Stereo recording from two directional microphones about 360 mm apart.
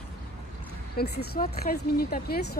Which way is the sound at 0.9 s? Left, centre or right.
Left.